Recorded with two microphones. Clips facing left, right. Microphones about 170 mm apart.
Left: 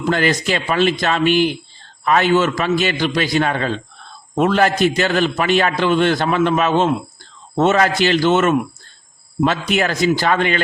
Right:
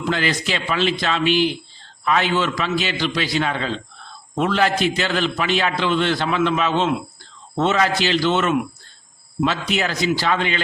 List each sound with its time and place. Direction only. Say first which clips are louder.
0.1 s a man's voice: left 5 dB; 50° left (ahead or behind)